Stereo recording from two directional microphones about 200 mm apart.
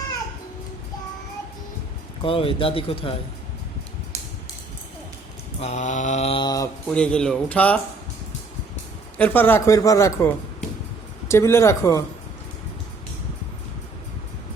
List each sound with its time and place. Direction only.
2.2 s speech: 25° left (ahead or behind)
5.5 s mantra: 35° left (ahead or behind)
6.9 s speech: 5° left (ahead or behind)
9.1 s speech: 10° left (ahead or behind)